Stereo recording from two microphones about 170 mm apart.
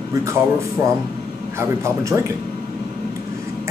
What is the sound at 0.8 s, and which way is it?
Speech, 15° right (ahead or behind).